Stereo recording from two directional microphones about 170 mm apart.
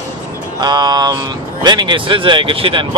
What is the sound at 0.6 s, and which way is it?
Speech, 25° right (ahead or behind).